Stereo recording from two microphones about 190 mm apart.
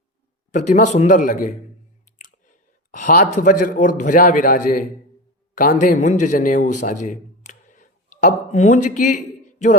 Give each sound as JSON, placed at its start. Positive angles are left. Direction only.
{"t": 0.5, "sound": "a man's voice", "side_deg": 40}